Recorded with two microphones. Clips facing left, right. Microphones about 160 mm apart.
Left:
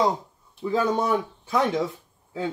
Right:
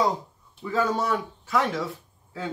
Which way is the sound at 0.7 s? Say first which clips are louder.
Left 2 dB; 20° left (ahead or behind).